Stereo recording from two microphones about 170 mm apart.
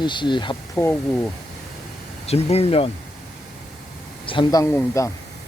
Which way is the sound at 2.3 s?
35° left (ahead or behind).